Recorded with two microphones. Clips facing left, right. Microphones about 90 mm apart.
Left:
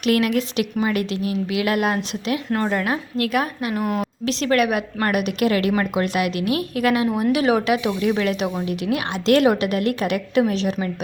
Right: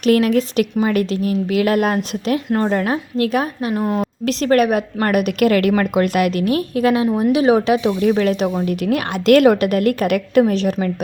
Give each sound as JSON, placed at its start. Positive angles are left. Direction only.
{"t": 0.0, "sound": "a woman's voice", "side_deg": -35}
{"t": 4.3, "sound": "a woman's voice", "side_deg": -40}
{"t": 8.1, "sound": "a woman's voice", "side_deg": -40}
{"t": 8.6, "sound": "a woman's voice", "side_deg": -55}